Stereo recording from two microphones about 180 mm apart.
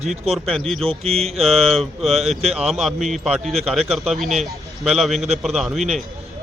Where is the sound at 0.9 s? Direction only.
35° right (ahead or behind).